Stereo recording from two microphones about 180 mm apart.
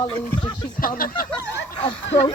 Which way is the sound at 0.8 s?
55° left (ahead or behind).